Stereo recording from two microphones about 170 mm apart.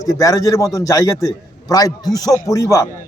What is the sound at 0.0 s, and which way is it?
A man's voice, 20° left (ahead or behind).